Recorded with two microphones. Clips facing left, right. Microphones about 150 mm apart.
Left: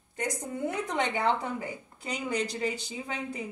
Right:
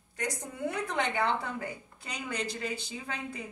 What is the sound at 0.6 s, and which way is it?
A woman's voice, 20° left (ahead or behind).